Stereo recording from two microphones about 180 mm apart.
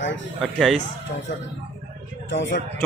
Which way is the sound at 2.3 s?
80° left.